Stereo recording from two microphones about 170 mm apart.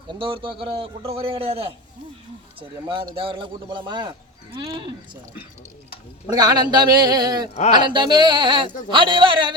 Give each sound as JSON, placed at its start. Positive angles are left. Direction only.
{"t": 0.1, "sound": "a man's voice", "side_deg": -30}
{"t": 6.3, "sound": "a man's voice", "side_deg": -25}